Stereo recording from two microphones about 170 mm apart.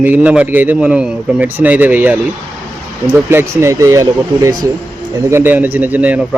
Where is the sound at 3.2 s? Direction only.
15° right (ahead or behind).